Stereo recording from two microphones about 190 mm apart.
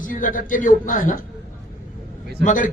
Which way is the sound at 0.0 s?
45° left (ahead or behind).